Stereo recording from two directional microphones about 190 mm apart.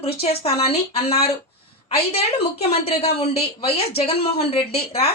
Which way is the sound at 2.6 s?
30° left (ahead or behind).